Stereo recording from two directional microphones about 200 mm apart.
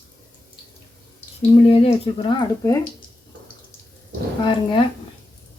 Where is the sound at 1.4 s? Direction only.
30° left (ahead or behind).